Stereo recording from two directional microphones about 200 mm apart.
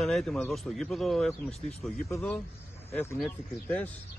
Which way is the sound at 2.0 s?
15° left (ahead or behind).